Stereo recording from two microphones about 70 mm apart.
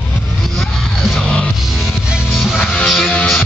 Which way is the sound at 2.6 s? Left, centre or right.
Centre.